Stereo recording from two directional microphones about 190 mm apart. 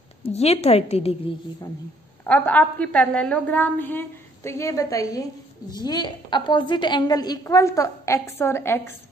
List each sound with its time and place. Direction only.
0.2 s a woman's voice: 35° left (ahead or behind)
2.2 s a woman's voice: 5° left (ahead or behind)